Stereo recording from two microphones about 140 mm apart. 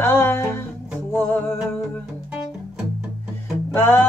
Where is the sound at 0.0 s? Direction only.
15° left (ahead or behind).